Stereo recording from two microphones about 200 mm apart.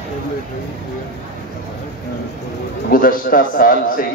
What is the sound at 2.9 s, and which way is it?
A man's voice, 45° left (ahead or behind).